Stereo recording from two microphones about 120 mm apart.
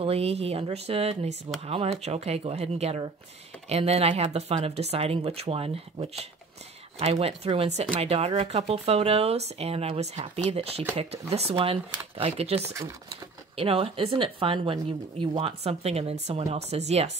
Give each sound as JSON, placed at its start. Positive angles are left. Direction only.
{"t": 0.0, "sound": "speech", "side_deg": -60}